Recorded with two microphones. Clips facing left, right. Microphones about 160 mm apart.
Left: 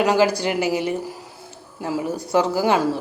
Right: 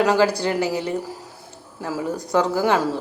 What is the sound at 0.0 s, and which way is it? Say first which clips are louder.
Speech: even; 15° left (ahead or behind).